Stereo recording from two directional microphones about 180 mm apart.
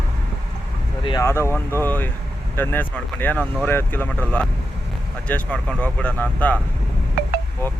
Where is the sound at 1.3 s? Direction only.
15° left (ahead or behind).